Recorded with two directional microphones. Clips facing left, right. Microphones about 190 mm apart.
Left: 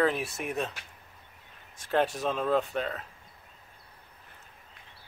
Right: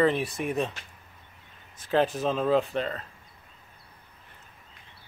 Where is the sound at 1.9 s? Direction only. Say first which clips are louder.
Right 3 dB; centre (ahead or behind).